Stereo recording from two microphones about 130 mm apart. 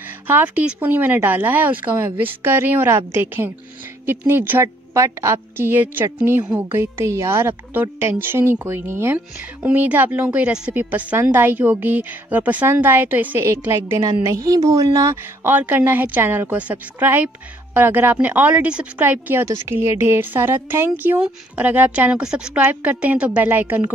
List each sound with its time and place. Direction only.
0.0 s a woman's voice: 15° right (ahead or behind)
15.5 s a woman's voice: 15° right (ahead or behind)